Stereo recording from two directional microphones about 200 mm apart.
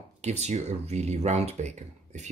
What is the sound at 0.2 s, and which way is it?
Speech, 35° right (ahead or behind).